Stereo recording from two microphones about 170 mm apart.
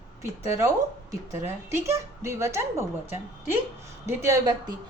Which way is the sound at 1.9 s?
15° right (ahead or behind).